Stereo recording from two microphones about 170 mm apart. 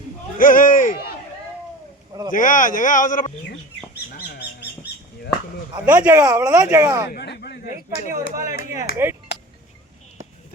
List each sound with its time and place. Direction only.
0.3 s speech: 50° left (ahead or behind)
2.3 s speech: 50° left (ahead or behind)
4.1 s bird: 70° left (ahead or behind)
5.8 s speech: 10° right (ahead or behind)
7.1 s a sound: 75° left (ahead or behind)
8.0 s speech: 45° left (ahead or behind)
8.8 s speech: 15° right (ahead or behind)